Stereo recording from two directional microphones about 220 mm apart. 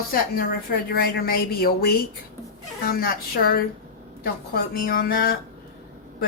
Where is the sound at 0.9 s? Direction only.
45° left (ahead or behind).